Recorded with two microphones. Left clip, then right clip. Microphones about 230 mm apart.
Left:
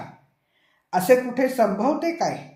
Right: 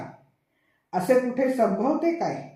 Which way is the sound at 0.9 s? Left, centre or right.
Left.